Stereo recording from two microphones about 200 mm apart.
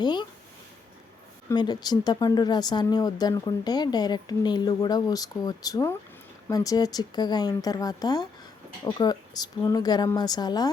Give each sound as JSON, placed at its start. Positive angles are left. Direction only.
{"t": 0.0, "sound": "speech", "side_deg": 20}
{"t": 1.5, "sound": "speech", "side_deg": 20}